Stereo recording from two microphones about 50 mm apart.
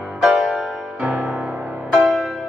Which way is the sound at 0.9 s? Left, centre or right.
Right.